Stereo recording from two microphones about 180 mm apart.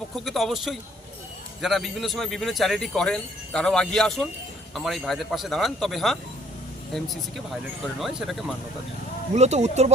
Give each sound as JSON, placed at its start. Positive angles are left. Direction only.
{"t": 0.3, "sound": "speech", "side_deg": 0}
{"t": 9.3, "sound": "speech", "side_deg": -40}